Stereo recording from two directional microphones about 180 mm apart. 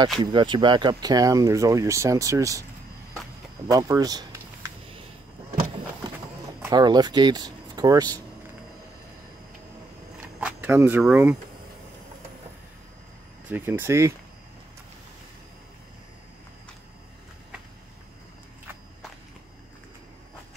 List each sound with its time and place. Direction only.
0.2 s speech: 25° right (ahead or behind)
3.7 s speech: 20° right (ahead or behind)
6.7 s speech: 20° right (ahead or behind)
10.4 s speech: 10° right (ahead or behind)
13.5 s speech: 10° right (ahead or behind)